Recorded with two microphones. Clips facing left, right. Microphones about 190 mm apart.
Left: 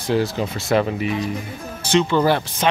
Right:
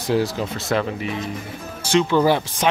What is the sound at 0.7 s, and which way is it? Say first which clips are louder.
Speech: left 4 dB; 15° left (ahead or behind).